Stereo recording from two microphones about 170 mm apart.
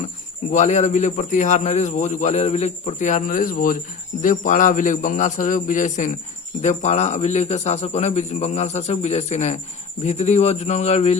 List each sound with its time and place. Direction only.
0.5 s a man's voice: 45° left (ahead or behind)